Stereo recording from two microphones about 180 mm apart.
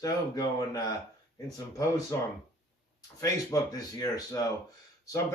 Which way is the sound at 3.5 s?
15° left (ahead or behind).